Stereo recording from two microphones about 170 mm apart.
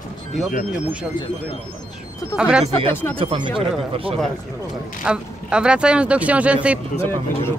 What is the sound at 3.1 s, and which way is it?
Speech, 30° right (ahead or behind).